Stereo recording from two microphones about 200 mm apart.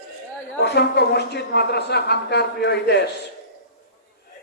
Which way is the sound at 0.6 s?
55° left (ahead or behind).